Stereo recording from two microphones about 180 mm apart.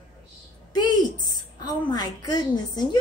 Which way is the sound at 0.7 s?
25° left (ahead or behind).